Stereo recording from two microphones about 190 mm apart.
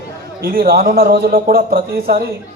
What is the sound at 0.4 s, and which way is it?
Speech, 50° right (ahead or behind).